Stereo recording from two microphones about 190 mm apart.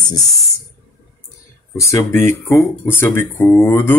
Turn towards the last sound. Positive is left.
turn(degrees=15)  # may be behind; listen again after turning